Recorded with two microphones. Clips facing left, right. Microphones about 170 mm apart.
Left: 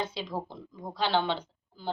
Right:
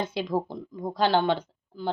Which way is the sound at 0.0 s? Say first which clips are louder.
Right 6 dB; 50° right (ahead or behind).